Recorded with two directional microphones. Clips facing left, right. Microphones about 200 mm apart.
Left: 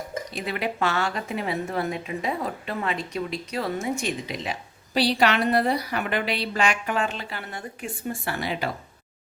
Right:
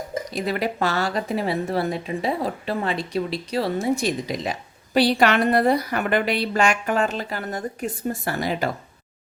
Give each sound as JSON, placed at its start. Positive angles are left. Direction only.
{"t": 0.3, "sound": "speech", "side_deg": -40}
{"t": 4.9, "sound": "a woman's voice", "side_deg": -50}